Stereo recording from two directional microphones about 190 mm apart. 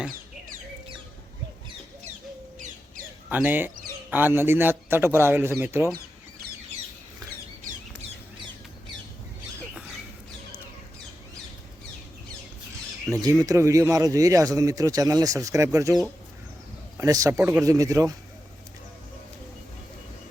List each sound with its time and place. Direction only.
3.2 s speech: 10° right (ahead or behind)
13.2 s speech: 20° right (ahead or behind)
17.0 s speech: 15° right (ahead or behind)